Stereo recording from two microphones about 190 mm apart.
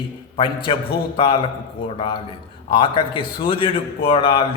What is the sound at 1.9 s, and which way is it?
A man's voice, 30° left (ahead or behind).